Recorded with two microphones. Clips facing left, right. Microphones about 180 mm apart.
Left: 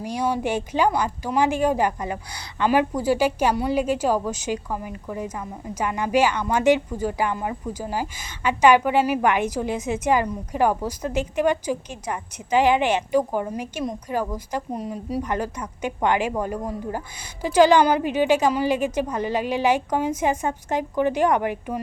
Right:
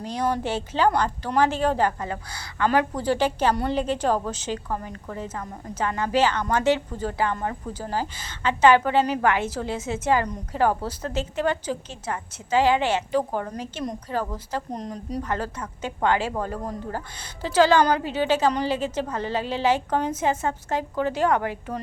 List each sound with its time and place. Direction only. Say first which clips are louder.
0.0 s a woman's voice: left 1 dB; 10° left (ahead or behind)